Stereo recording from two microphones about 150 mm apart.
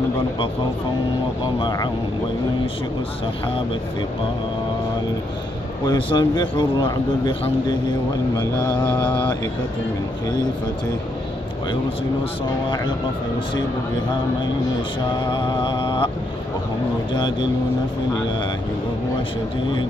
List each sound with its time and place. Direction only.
1.4 s speech: 30° left (ahead or behind)
5.9 s a man's voice: 30° left (ahead or behind)
8.4 s speech: 15° left (ahead or behind)
15.3 s music: 30° left (ahead or behind)
17.1 s speech: 30° left (ahead or behind)